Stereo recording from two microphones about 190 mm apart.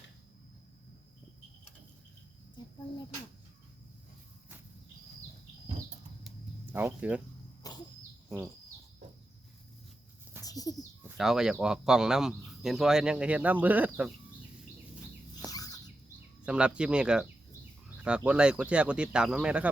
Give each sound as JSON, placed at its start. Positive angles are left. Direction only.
{"t": 6.2, "sound": "a sound", "side_deg": -10}
{"t": 7.6, "sound": "a sound", "side_deg": 20}
{"t": 10.4, "sound": "bird", "side_deg": 20}
{"t": 11.2, "sound": "speech", "side_deg": 0}
{"t": 15.4, "sound": "bird", "side_deg": 20}
{"t": 16.5, "sound": "speech", "side_deg": -5}